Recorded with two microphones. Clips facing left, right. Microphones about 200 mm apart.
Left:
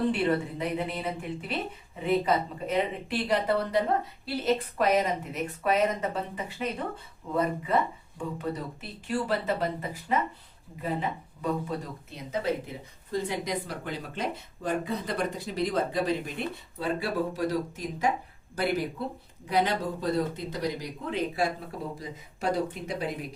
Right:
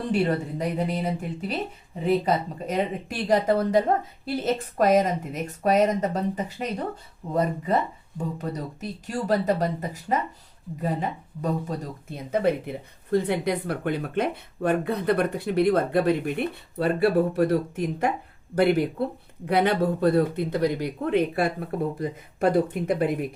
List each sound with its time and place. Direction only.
0.1 s speech: 40° right (ahead or behind)